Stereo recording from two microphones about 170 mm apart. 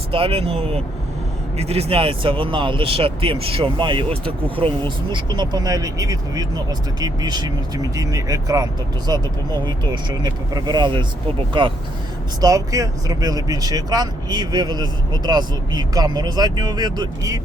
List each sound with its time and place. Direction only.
0.1 s speech: 35° right (ahead or behind)